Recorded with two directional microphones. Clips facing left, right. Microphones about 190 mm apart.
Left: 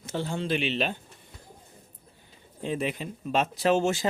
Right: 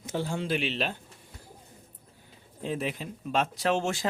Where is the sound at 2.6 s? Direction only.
Centre (ahead or behind).